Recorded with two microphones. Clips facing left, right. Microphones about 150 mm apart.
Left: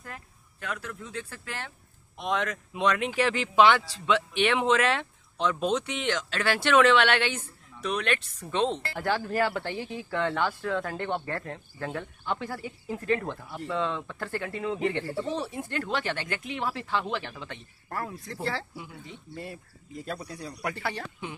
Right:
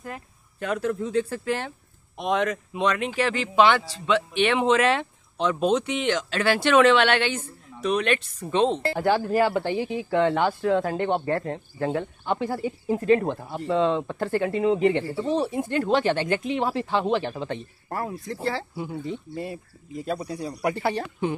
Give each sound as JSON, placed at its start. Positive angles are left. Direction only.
{"t": 0.0, "sound": "speech", "side_deg": -20}
{"t": 2.1, "sound": "a man's voice", "side_deg": -15}
{"t": 2.8, "sound": "speech", "side_deg": 5}
{"t": 8.4, "sound": "speech", "side_deg": -20}
{"t": 17.8, "sound": "speech", "side_deg": -20}
{"t": 18.3, "sound": "a man's voice", "side_deg": -10}
{"t": 18.8, "sound": "speech", "side_deg": -40}
{"t": 19.3, "sound": "a man's voice", "side_deg": -15}